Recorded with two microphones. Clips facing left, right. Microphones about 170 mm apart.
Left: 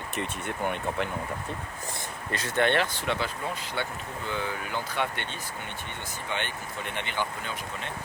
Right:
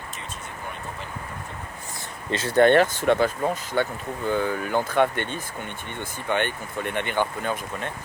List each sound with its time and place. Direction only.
0.2 s speech: 65° left (ahead or behind)
2.6 s speech: 45° right (ahead or behind)